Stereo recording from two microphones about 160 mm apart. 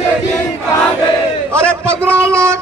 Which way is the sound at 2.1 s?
15° right (ahead or behind).